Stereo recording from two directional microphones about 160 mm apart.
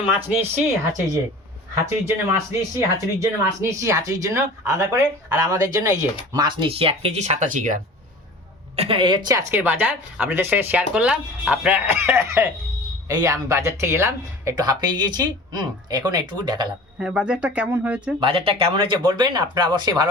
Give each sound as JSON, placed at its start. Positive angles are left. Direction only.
{"t": 0.3, "sound": "speech", "side_deg": -15}
{"t": 8.7, "sound": "speech", "side_deg": -35}
{"t": 17.0, "sound": "speech", "side_deg": -5}
{"t": 18.2, "sound": "speech", "side_deg": -35}